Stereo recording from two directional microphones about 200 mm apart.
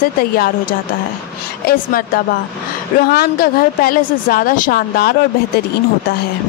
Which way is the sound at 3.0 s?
50° left (ahead or behind).